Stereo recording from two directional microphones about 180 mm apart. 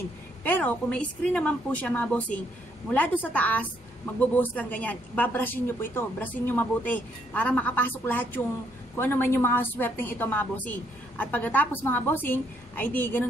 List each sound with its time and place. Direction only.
0.4 s a woman's voice: 10° left (ahead or behind)